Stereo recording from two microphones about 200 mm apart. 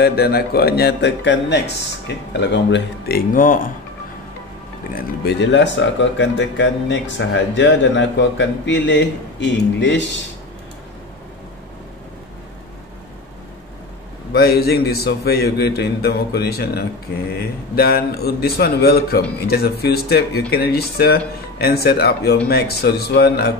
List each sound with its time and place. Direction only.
0.0 s a man's voice: 50° left (ahead or behind)
4.9 s speech: 60° left (ahead or behind)
14.3 s a man's voice: 50° left (ahead or behind)